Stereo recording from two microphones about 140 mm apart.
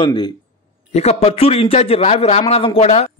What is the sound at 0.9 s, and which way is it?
A man's voice, 50° left (ahead or behind).